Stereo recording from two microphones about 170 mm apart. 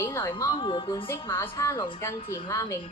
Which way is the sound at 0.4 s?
30° left (ahead or behind).